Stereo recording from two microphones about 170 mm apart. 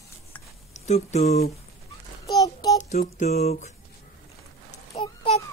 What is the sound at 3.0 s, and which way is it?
Speech, 45° left (ahead or behind).